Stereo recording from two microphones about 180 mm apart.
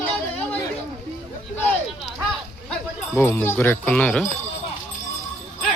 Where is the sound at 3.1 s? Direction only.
10° left (ahead or behind).